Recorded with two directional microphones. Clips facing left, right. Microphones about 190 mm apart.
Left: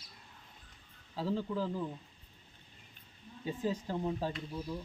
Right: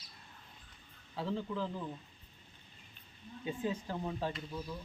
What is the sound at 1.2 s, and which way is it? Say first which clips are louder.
Speech: left 3 dB; 35° left (ahead or behind).